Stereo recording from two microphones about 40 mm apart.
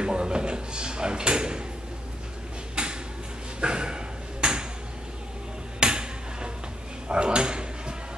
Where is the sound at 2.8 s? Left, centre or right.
Right.